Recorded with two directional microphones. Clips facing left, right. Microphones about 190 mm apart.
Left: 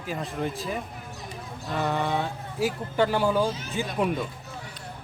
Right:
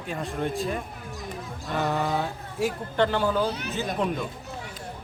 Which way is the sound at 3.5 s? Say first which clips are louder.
Right 1 dB; 65° right (ahead or behind).